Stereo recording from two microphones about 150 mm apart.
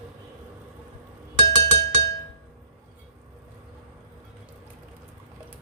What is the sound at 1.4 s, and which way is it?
Chink, 30° right (ahead or behind).